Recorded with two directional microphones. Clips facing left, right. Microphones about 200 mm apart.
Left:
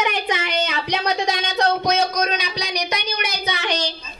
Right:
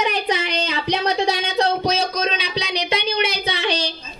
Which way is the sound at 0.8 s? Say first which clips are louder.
Right 2 dB; 30° right (ahead or behind).